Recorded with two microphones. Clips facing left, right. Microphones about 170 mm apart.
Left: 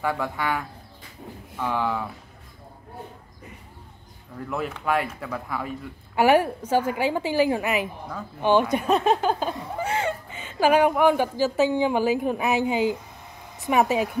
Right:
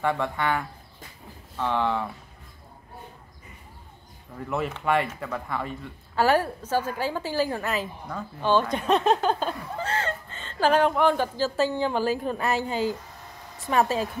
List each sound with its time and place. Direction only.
0.0 s speech: 5° left (ahead or behind)
4.5 s speech: centre (ahead or behind)
6.1 s speech: 15° left (ahead or behind)